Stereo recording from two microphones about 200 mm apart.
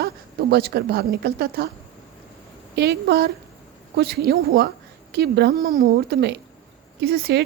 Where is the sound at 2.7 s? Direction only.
55° right (ahead or behind).